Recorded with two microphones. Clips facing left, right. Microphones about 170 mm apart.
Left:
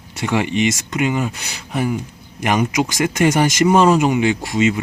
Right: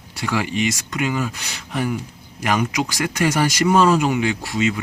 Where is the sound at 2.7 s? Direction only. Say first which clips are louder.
Left 4 dB; 20° left (ahead or behind).